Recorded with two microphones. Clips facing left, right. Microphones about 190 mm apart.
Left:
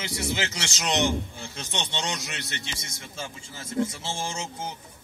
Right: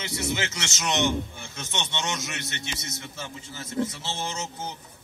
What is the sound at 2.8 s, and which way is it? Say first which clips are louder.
A man's voice: right 1 dB; 30° left (ahead or behind).